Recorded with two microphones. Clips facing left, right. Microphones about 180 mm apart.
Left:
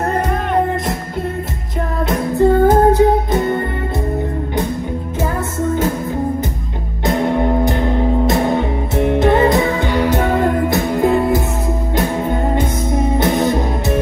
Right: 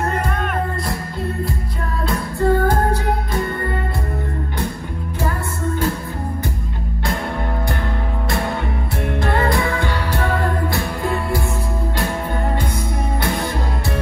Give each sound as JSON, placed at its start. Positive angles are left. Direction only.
{"t": 2.0, "sound": "music", "side_deg": 20}
{"t": 7.1, "sound": "music", "side_deg": 20}